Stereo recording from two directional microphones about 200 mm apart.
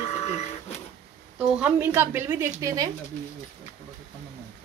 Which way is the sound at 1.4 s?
5° right (ahead or behind).